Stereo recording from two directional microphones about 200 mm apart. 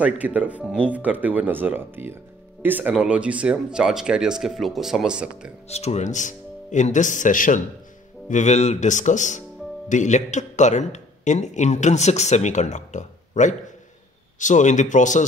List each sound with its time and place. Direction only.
0.0 s speech: 5° right (ahead or behind)
5.7 s a man's voice: 30° left (ahead or behind)